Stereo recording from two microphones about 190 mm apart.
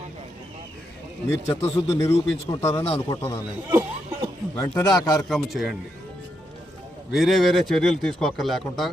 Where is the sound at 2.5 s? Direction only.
15° left (ahead or behind).